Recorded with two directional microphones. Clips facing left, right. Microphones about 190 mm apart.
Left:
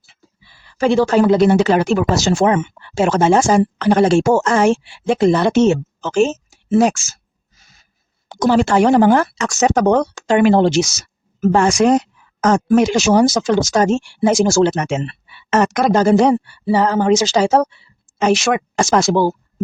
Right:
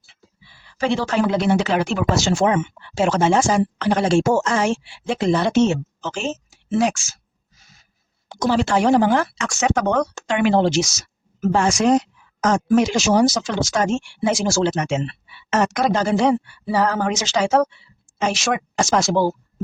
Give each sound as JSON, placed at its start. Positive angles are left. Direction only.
{"t": 0.8, "sound": "speech", "side_deg": 45}
{"t": 8.3, "sound": "speech", "side_deg": 50}
{"t": 16.6, "sound": "speech", "side_deg": 25}
{"t": 18.2, "sound": "speech", "side_deg": 60}